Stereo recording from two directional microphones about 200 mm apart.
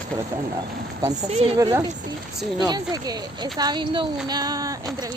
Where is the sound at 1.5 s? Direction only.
20° right (ahead or behind).